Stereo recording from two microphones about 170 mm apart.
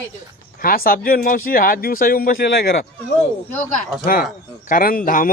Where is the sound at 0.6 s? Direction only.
60° left (ahead or behind).